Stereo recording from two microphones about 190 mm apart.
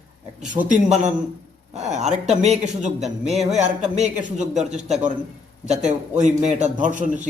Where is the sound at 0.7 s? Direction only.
40° right (ahead or behind).